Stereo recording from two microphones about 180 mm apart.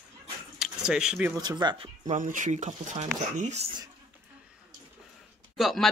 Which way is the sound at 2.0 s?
45° right (ahead or behind).